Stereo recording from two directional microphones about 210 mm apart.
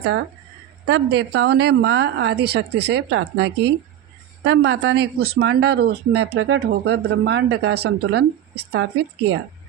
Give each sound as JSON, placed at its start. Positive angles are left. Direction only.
{"t": 0.9, "sound": "speech", "side_deg": -55}